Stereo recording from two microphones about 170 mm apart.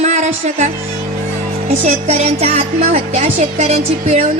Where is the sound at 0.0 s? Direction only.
40° right (ahead or behind).